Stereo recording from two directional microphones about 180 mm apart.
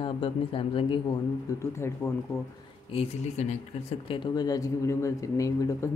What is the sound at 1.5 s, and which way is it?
Speech, 15° left (ahead or behind).